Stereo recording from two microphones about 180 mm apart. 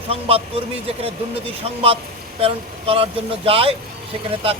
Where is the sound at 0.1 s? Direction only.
35° right (ahead or behind).